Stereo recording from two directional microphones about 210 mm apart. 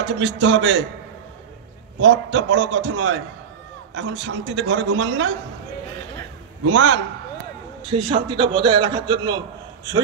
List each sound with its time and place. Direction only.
0.0 s a man's voice: 60° right (ahead or behind)
2.0 s a man's voice: 60° right (ahead or behind); by 3.3 s 90° right
3.9 s a man's voice: 55° right (ahead or behind)
6.6 s a man's voice: 60° right (ahead or behind)
7.9 s a man's voice: 25° right (ahead or behind)